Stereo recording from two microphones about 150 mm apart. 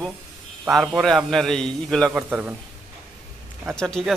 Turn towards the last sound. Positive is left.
turn(degrees=5)  # may be behind; listen again after turning